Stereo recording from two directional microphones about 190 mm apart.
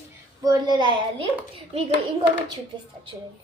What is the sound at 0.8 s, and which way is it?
Speech, 25° right (ahead or behind).